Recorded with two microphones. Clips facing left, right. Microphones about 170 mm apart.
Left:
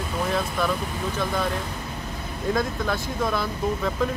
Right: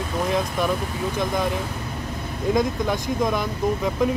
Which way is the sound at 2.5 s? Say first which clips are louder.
Right 3 dB; 15° right (ahead or behind).